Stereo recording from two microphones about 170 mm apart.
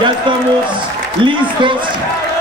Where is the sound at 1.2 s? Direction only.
30° right (ahead or behind).